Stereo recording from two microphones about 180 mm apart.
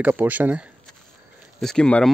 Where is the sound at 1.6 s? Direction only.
5° left (ahead or behind).